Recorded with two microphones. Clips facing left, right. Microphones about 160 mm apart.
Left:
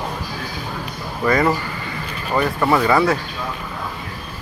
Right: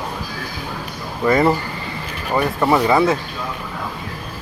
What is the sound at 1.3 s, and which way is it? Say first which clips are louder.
Speech: right 2 dB; 25° right (ahead or behind).